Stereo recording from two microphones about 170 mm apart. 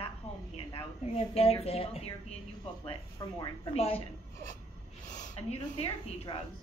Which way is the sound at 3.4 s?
35° left (ahead or behind).